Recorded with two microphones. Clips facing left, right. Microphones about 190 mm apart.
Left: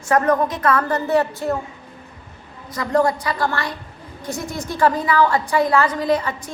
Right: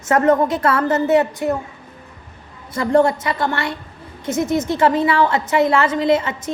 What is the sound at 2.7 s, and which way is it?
A woman's voice, 30° right (ahead or behind).